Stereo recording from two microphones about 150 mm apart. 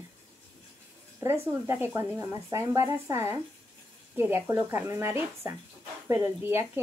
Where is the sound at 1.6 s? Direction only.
15° right (ahead or behind).